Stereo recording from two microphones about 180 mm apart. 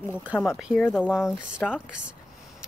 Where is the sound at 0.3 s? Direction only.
Centre (ahead or behind).